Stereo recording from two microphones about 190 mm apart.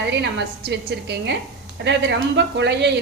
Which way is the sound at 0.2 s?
65° right (ahead or behind).